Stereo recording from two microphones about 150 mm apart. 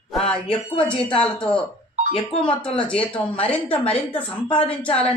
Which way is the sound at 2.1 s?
35° left (ahead or behind).